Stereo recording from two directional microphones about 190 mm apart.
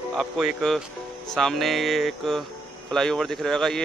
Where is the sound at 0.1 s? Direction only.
Centre (ahead or behind).